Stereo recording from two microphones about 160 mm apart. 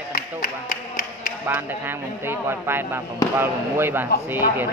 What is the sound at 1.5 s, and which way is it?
Speech, 15° right (ahead or behind).